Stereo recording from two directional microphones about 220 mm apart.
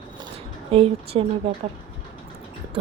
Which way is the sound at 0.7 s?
25° right (ahead or behind).